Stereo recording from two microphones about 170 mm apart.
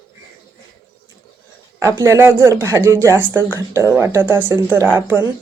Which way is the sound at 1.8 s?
15° right (ahead or behind).